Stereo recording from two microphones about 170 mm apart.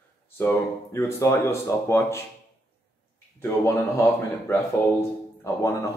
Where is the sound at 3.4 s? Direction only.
15° left (ahead or behind).